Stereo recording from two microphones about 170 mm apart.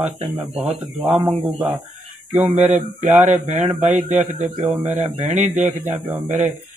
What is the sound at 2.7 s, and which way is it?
A man's voice, 45° right (ahead or behind).